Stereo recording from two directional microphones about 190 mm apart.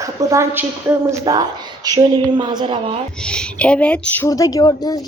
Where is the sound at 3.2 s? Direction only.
5° left (ahead or behind); by 5.0 s 20° left (ahead or behind).